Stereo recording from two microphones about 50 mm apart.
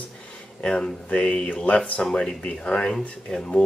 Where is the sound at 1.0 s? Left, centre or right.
Left.